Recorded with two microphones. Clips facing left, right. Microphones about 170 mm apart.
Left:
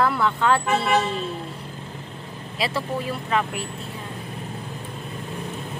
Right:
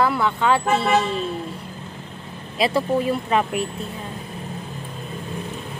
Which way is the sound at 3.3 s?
20° right (ahead or behind).